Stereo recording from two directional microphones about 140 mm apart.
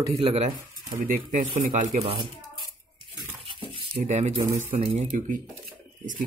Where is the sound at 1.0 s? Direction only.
70° right (ahead or behind).